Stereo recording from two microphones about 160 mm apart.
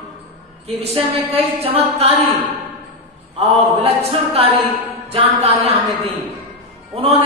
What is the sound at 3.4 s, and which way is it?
A woman's voice, 40° right (ahead or behind).